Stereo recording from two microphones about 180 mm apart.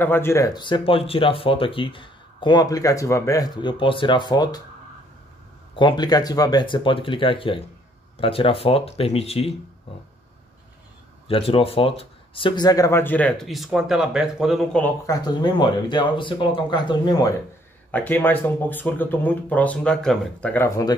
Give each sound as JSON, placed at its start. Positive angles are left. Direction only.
{"t": 0.0, "sound": "speech", "side_deg": 10}
{"t": 5.8, "sound": "speech", "side_deg": 25}
{"t": 11.2, "sound": "speech", "side_deg": 30}
{"t": 15.0, "sound": "speech", "side_deg": 25}
{"t": 17.9, "sound": "speech", "side_deg": 10}